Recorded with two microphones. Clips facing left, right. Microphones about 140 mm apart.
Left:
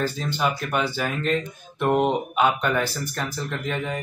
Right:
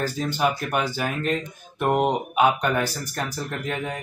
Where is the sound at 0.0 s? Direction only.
10° right (ahead or behind).